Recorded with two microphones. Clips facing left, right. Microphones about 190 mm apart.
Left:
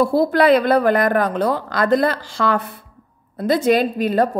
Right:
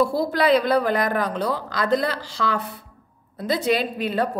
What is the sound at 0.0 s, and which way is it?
A woman's voice, 55° left (ahead or behind).